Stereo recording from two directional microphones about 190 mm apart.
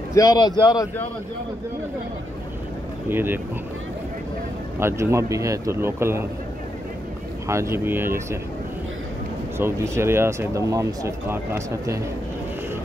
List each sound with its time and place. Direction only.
0.1 s a man's voice: 20° left (ahead or behind)
3.1 s a man's voice: 10° right (ahead or behind)
4.7 s a man's voice: 15° right (ahead or behind)
7.4 s a man's voice: 15° right (ahead or behind)
9.6 s a man's voice: 15° right (ahead or behind)